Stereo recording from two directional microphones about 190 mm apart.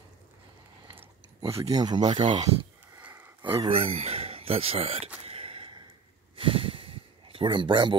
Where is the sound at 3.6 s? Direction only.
30° right (ahead or behind).